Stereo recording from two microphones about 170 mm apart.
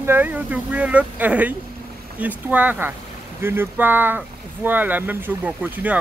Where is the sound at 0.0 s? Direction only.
10° right (ahead or behind).